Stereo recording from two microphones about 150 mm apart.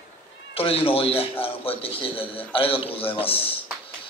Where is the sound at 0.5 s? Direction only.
40° left (ahead or behind).